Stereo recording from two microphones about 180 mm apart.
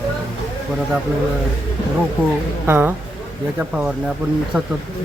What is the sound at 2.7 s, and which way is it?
Speech, 10° right (ahead or behind).